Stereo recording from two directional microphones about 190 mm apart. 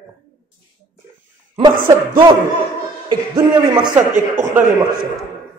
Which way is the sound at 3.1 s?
25° right (ahead or behind).